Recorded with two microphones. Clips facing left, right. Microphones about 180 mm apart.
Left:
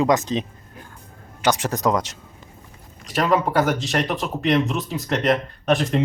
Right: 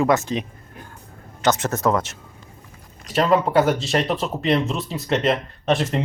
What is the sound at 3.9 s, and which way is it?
Speech, centre (ahead or behind).